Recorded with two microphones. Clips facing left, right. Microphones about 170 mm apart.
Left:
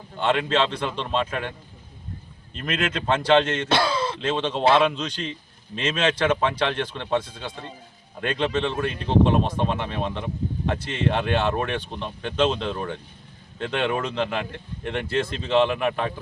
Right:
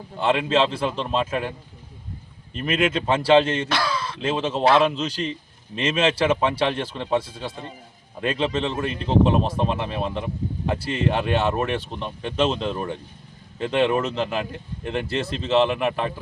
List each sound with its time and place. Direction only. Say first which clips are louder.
0.2 s speech: right 2 dB; 5° right (ahead or behind)
2.6 s speech: right 4 dB; 10° right (ahead or behind)
3.7 s speech: left 3 dB; 25° left (ahead or behind)
4.2 s speech: right 3 dB; 10° right (ahead or behind)